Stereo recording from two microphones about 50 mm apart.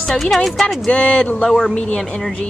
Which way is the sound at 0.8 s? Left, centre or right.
Centre.